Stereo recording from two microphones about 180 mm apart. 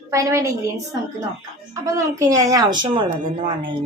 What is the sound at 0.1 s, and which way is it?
Speech, 15° right (ahead or behind).